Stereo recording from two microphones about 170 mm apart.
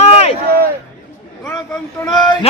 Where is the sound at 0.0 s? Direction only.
40° left (ahead or behind).